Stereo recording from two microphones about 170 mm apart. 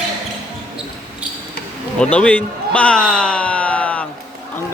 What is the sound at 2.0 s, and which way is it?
A man's voice, 5° left (ahead or behind).